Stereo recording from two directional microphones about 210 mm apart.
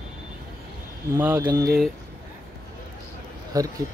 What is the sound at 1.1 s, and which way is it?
Speech, 10° right (ahead or behind).